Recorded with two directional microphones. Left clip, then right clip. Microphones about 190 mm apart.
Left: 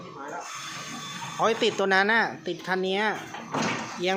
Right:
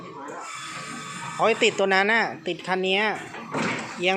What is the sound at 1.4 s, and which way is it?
Speech, centre (ahead or behind).